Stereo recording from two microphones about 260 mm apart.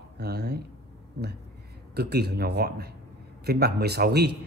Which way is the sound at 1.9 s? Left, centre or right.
Right.